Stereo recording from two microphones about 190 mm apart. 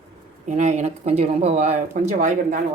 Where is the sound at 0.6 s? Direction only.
40° right (ahead or behind).